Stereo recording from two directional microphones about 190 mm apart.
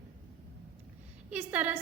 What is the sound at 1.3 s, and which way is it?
Speech, 10° right (ahead or behind).